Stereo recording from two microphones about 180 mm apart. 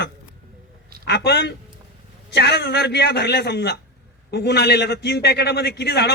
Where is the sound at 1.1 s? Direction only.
65° left (ahead or behind).